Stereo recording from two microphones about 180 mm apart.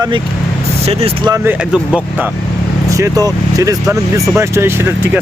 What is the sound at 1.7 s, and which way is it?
Speech, 5° right (ahead or behind).